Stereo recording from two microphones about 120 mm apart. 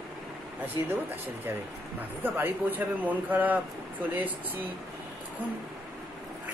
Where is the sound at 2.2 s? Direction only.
15° right (ahead or behind).